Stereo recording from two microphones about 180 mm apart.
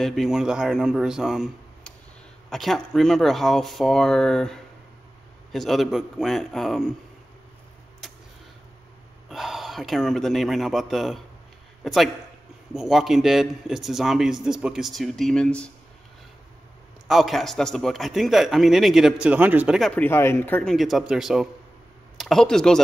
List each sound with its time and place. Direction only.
0.0 s a man's voice: centre (ahead or behind)
8.0 s a sound: centre (ahead or behind)
9.3 s a man's voice: centre (ahead or behind)
17.1 s a man's voice: centre (ahead or behind)
20.0 s speech: 15° left (ahead or behind)
20.7 s a man's voice: centre (ahead or behind)